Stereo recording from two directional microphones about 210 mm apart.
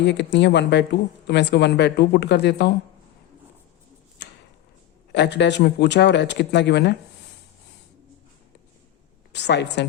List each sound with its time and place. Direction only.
0.0 s speech: 55° left (ahead or behind)
4.2 s tick-tock: 55° left (ahead or behind)
5.1 s speech: 55° left (ahead or behind)
9.3 s a woman's voice: 55° left (ahead or behind)